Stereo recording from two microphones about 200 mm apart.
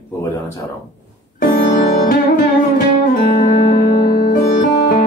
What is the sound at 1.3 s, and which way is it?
Music, 45° left (ahead or behind).